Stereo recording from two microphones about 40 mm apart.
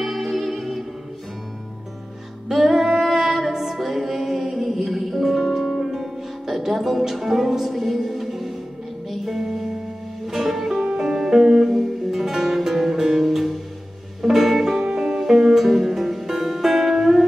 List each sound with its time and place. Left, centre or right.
0.0 s music: centre
2.4 s female singing: centre
9.1 s music: centre